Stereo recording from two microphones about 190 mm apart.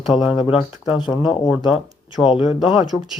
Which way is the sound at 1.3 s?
5° right (ahead or behind).